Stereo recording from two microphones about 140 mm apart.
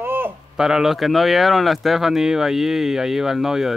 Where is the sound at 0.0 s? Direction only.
15° right (ahead or behind).